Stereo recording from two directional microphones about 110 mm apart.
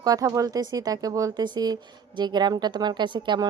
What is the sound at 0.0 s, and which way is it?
Speech, 35° right (ahead or behind).